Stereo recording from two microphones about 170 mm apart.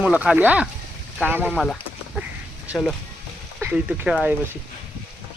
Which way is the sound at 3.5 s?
5° right (ahead or behind).